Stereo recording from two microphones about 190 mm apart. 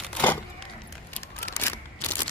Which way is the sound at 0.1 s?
10° left (ahead or behind).